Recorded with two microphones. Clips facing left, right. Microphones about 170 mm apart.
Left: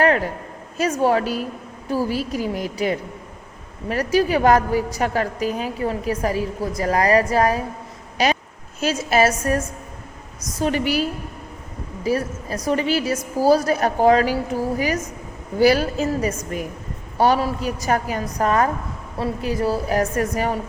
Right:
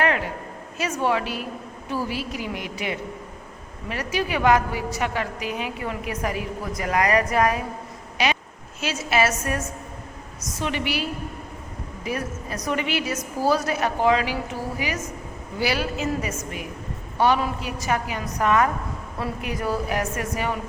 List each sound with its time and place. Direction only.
0.0 s a sound: 40° left (ahead or behind)
0.8 s a woman's voice: 40° left (ahead or behind)
8.8 s a woman's voice: 40° left (ahead or behind)
10.6 s a woman's voice: 40° left (ahead or behind)
12.0 s a woman's voice: 35° left (ahead or behind)
15.5 s a woman's voice: 45° left (ahead or behind)